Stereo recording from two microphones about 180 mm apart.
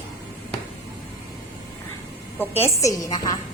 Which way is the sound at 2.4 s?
15° left (ahead or behind).